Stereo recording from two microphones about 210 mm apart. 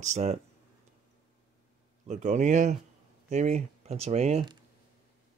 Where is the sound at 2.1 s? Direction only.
35° right (ahead or behind).